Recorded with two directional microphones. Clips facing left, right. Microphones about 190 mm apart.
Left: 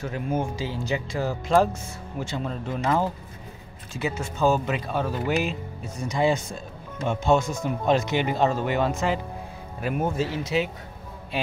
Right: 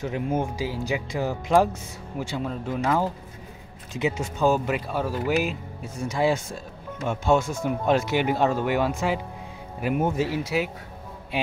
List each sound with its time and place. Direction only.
0.0 s speech: 20° right (ahead or behind)
3.9 s speech: 20° right (ahead or behind)